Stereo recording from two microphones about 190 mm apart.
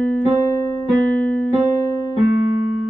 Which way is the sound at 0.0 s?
10° left (ahead or behind).